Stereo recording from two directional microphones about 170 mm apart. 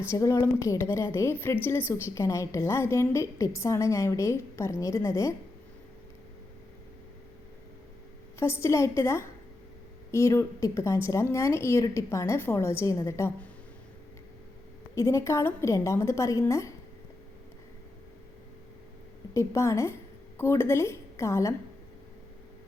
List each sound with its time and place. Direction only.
0.1 s a woman's voice: 20° left (ahead or behind)
8.4 s a woman's voice: 15° left (ahead or behind)
14.9 s a woman's voice: 15° left (ahead or behind)
19.3 s a woman's voice: 15° left (ahead or behind)